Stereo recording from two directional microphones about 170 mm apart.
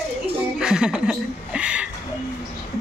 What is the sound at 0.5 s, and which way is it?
Speech, 5° right (ahead or behind).